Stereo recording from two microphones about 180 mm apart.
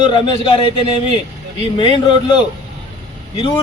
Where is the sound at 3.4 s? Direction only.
30° left (ahead or behind).